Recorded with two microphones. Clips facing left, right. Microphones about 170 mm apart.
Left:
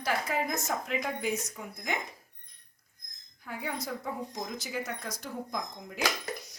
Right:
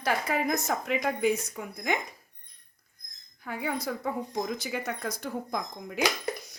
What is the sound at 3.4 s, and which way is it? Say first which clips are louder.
A woman's voice: right 4 dB; 65° right (ahead or behind).